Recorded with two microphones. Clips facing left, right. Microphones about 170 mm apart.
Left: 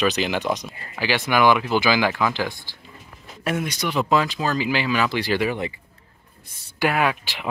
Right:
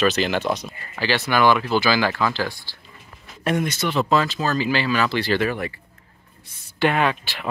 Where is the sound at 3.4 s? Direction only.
5° left (ahead or behind).